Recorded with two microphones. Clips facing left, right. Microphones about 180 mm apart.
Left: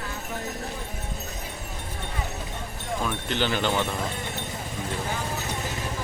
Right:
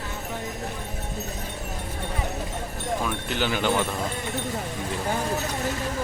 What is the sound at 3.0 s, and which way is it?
Speech, 10° right (ahead or behind).